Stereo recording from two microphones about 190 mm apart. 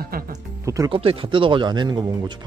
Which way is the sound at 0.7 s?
20° right (ahead or behind).